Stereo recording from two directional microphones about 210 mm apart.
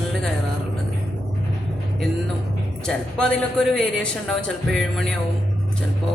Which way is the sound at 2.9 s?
5° left (ahead or behind).